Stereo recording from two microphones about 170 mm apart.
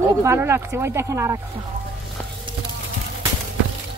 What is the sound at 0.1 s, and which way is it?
Speech, 15° right (ahead or behind).